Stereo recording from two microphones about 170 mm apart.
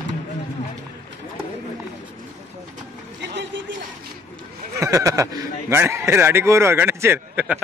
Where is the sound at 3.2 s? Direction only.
90° right.